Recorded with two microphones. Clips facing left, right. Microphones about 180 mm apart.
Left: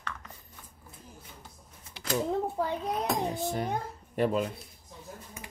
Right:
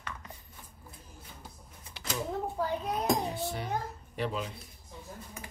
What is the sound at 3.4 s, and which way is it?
Speech, 45° left (ahead or behind).